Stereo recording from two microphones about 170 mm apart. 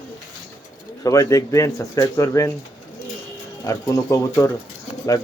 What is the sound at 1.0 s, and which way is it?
Speech, 20° left (ahead or behind).